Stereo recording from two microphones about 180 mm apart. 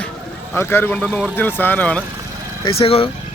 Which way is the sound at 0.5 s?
15° left (ahead or behind).